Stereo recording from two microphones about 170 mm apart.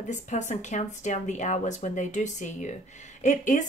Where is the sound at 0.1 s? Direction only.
45° left (ahead or behind).